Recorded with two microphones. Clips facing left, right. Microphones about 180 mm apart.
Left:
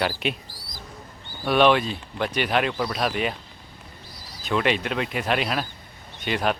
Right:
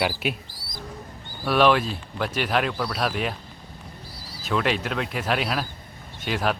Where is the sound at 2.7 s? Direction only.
10° left (ahead or behind).